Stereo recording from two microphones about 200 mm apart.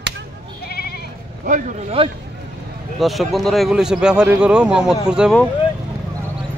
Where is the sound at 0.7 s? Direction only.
50° left (ahead or behind).